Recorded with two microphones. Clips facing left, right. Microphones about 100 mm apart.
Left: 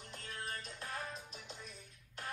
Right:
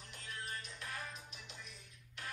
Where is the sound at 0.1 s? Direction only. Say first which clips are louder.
Left 1 dB; 30° left (ahead or behind).